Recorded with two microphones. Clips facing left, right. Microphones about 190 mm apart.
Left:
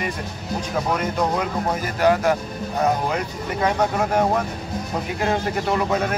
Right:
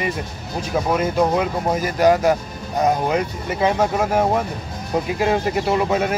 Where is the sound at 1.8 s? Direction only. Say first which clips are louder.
Right 4 dB; 10° right (ahead or behind).